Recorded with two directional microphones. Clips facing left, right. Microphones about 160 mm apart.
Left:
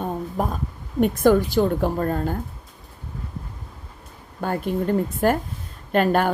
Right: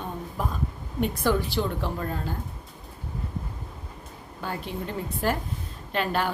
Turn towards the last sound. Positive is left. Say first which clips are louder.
# left 8 dB
turn(degrees=50)  # may be behind; listen again after turning